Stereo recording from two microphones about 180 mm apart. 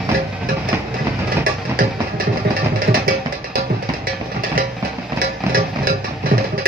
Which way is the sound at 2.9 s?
55° right (ahead or behind).